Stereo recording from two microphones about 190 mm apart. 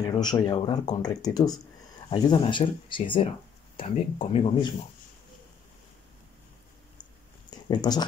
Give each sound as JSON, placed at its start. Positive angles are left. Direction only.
{"t": 0.0, "sound": "speech", "side_deg": 20}
{"t": 7.6, "sound": "speech", "side_deg": 20}